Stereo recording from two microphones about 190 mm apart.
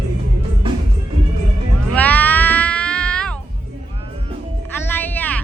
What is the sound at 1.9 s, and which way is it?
Cat, 10° left (ahead or behind).